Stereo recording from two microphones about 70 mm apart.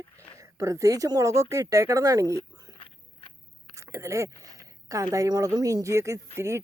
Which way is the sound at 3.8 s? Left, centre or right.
Right.